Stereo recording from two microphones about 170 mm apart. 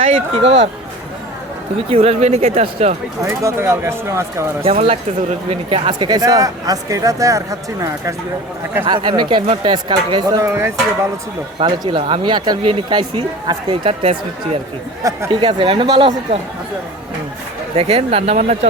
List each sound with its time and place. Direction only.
0.0 s speech: 35° right (ahead or behind)
0.4 s speech: 90° right
1.9 s speech: 35° right (ahead or behind)
3.2 s speech: 15° right (ahead or behind)
4.6 s speech: 35° right (ahead or behind); by 8.1 s 20° right (ahead or behind)
8.8 s speech: 30° right (ahead or behind)
11.6 s speech: 30° right (ahead or behind)
17.7 s speech: 35° right (ahead or behind)